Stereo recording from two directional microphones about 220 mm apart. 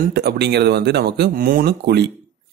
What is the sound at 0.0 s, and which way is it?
Speech, 50° right (ahead or behind).